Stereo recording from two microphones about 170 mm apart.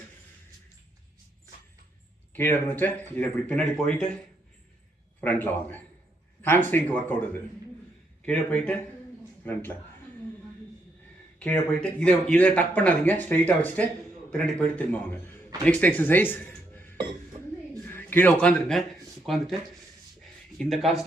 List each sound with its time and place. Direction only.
2.3 s speech: 10° left (ahead or behind)
5.2 s speech: 10° left (ahead or behind)
11.3 s speech: 10° left (ahead or behind)
20.6 s speech: centre (ahead or behind)